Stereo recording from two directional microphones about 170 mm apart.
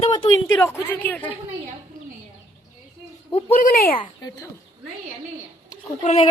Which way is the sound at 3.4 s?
40° left (ahead or behind).